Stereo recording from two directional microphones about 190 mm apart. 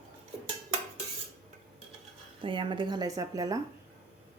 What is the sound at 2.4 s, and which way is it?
Speech, 25° right (ahead or behind).